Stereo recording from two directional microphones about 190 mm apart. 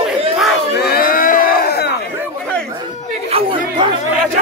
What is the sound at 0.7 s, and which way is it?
Crowd, 55° left (ahead or behind).